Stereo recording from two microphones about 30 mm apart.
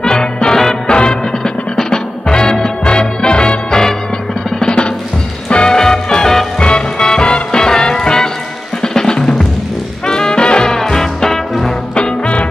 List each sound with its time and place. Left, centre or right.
0.0 s music: left
4.6 s drum: left
5.7 s music: centre
8.8 s drum: left
10.0 s music: left
10.7 s music: centre
11.9 s music: left